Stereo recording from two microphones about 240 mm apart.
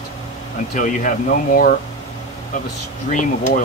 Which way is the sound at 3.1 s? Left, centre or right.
Left.